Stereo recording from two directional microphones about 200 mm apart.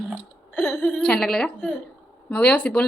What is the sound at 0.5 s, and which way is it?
A woman's voice, 5° left (ahead or behind).